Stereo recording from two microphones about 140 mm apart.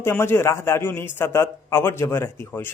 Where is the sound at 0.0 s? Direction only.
15° left (ahead or behind).